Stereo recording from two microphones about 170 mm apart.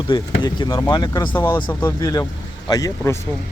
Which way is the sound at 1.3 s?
15° left (ahead or behind).